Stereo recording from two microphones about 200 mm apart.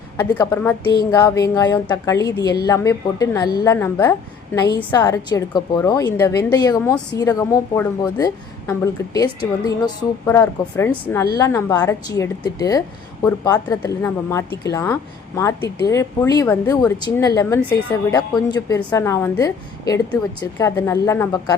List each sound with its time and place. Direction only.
0.2 s a woman's voice: 10° left (ahead or behind)